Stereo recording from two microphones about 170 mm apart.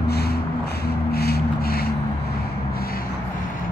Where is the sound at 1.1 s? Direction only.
65° left (ahead or behind).